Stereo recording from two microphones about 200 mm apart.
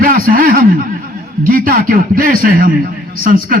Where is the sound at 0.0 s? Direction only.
45° right (ahead or behind).